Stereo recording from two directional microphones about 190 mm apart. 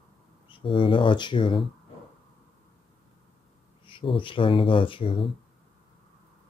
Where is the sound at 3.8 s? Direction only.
25° left (ahead or behind).